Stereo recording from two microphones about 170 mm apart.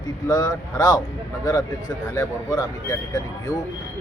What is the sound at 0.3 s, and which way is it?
Speech, 25° left (ahead or behind).